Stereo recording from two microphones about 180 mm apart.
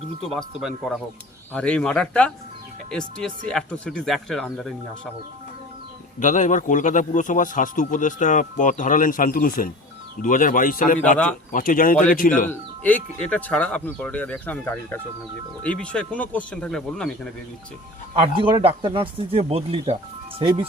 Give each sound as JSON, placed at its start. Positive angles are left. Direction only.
{"t": 0.2, "sound": "speech", "side_deg": 0}
{"t": 6.1, "sound": "a man's voice", "side_deg": 45}
{"t": 12.5, "sound": "speech", "side_deg": 10}
{"t": 18.1, "sound": "speech", "side_deg": -30}